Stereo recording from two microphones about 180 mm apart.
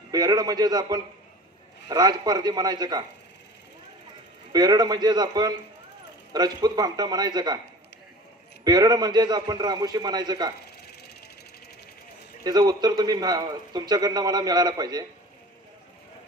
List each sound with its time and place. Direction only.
0.1 s a man's voice: 20° right (ahead or behind)
4.5 s a man's voice: 20° right (ahead or behind)
8.6 s a man's voice: 20° right (ahead or behind)
12.5 s a man's voice: 20° right (ahead or behind)